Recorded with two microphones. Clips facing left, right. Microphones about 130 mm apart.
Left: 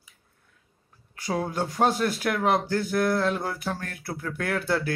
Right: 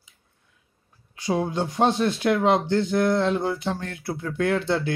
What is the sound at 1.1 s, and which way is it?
Speech, 20° right (ahead or behind).